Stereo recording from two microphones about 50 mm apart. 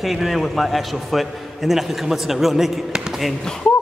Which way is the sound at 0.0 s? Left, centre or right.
Centre.